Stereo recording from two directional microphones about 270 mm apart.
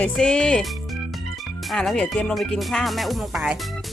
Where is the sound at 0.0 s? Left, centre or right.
Centre.